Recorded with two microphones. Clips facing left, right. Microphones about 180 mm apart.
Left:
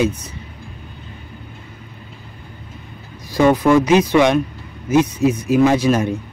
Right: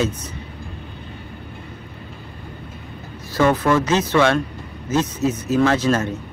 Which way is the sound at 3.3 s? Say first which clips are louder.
Left 4 dB; 15° left (ahead or behind).